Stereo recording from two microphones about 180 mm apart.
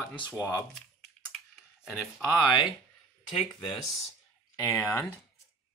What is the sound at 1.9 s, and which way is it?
Speech, 5° right (ahead or behind).